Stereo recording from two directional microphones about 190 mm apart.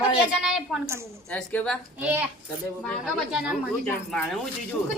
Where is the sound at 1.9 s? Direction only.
10° right (ahead or behind).